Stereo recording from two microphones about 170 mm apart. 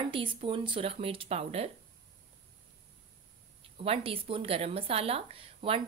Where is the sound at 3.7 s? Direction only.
35° right (ahead or behind).